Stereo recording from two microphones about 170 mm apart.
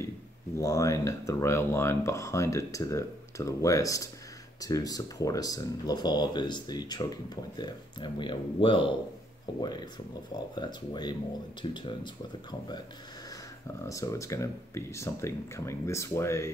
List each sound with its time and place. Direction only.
0.6 s speech: 20° left (ahead or behind)
13.8 s speech: 20° left (ahead or behind)